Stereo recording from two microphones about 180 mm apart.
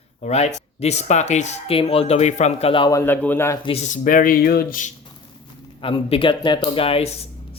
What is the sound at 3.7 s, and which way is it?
Speech, 40° left (ahead or behind).